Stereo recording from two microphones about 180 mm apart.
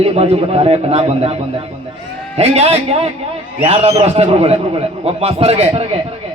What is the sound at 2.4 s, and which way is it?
Speech, 35° right (ahead or behind).